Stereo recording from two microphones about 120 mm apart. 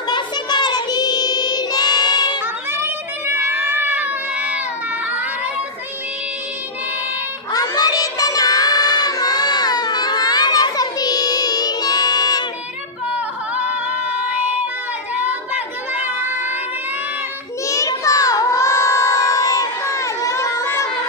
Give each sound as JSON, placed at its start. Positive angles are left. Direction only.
{"t": 0.1, "sound": "child singing", "side_deg": 35}
{"t": 2.4, "sound": "cat", "side_deg": -20}
{"t": 7.5, "sound": "child singing", "side_deg": 35}
{"t": 13.6, "sound": "female singing", "side_deg": -10}
{"t": 15.9, "sound": "crowd", "side_deg": -15}
{"t": 17.6, "sound": "child singing", "side_deg": 30}